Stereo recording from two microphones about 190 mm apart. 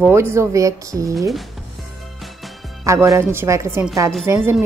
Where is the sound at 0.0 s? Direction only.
15° right (ahead or behind).